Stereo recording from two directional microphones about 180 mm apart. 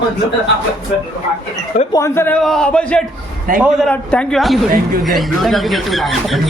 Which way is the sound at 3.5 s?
50° right (ahead or behind).